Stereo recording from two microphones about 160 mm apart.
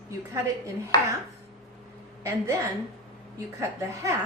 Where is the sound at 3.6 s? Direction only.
20° right (ahead or behind).